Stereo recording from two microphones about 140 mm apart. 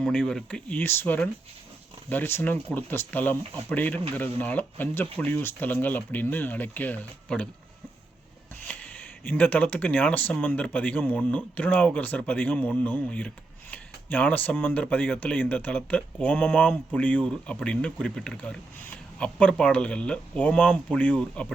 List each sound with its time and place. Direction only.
0.0 s speech: 5° left (ahead or behind)
8.6 s speech: 10° left (ahead or behind)